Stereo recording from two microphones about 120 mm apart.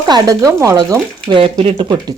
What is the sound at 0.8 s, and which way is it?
Speech, 40° right (ahead or behind).